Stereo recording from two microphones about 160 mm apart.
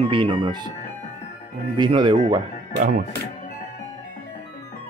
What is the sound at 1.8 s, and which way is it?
Speech, 30° right (ahead or behind).